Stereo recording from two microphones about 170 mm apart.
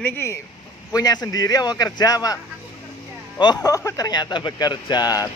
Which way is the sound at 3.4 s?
25° left (ahead or behind).